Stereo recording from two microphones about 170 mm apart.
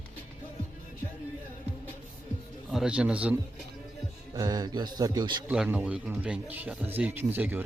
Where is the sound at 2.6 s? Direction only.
5° right (ahead or behind).